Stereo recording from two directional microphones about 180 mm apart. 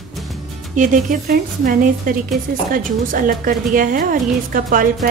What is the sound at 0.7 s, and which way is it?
A woman's voice, 45° right (ahead or behind).